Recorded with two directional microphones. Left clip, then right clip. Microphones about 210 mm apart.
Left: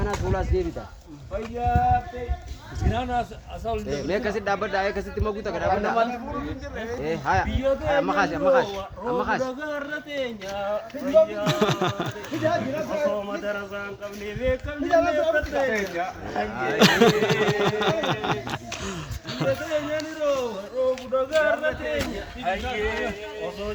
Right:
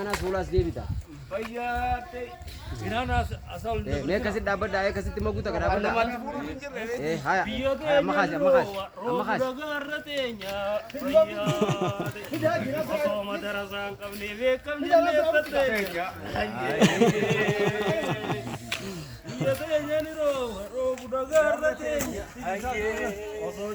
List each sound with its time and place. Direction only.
0.5 s speech: 50° right (ahead or behind)
1.3 s speech: centre (ahead or behind)
2.9 s a man's voice: 10° left (ahead or behind)
4.1 s speech: 40° right (ahead or behind)
7.0 s speech: 40° right (ahead or behind)
9.4 s speech: centre (ahead or behind)
16.5 s speech: 50° right (ahead or behind)
16.7 s speech: 5° right (ahead or behind)